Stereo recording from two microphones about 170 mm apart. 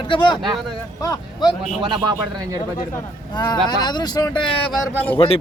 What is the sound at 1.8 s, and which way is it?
Speech, 25° right (ahead or behind).